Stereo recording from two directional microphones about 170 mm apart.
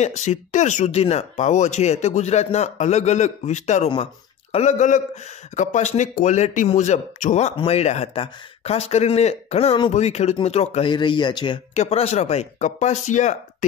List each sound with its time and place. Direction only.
0.0 s speech: 45° left (ahead or behind); by 11.6 s 25° left (ahead or behind)
11.7 s speech: 40° left (ahead or behind)